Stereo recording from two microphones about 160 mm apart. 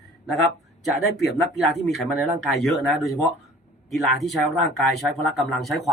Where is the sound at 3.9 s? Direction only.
Centre (ahead or behind).